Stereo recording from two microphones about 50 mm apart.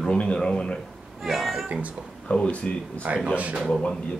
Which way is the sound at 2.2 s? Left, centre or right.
Left.